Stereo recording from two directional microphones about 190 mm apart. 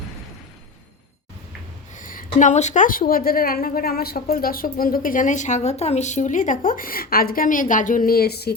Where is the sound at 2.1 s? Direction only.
40° left (ahead or behind).